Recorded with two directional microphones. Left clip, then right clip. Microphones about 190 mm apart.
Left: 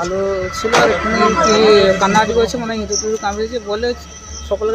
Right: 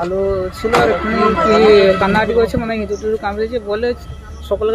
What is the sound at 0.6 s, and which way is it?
Music, 30° left (ahead or behind).